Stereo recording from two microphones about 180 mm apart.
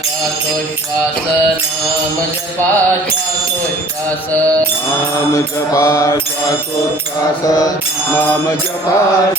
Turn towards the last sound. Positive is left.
turn(degrees=20)  # may be behind; listen again after turning